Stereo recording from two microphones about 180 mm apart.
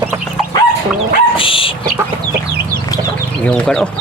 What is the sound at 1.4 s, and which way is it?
Dog, 30° left (ahead or behind).